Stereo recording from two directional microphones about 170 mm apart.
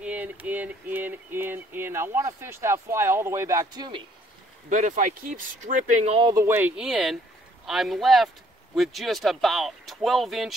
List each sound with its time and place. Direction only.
0.0 s a sound: 10° right (ahead or behind); by 4.0 s 25° right (ahead or behind)
4.6 s speech: 45° right (ahead or behind)
6.1 s speech: 25° right (ahead or behind)
6.4 s speech: 10° right (ahead or behind)